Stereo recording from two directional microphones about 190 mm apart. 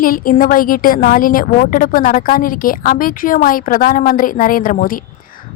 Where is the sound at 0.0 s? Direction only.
45° left (ahead or behind).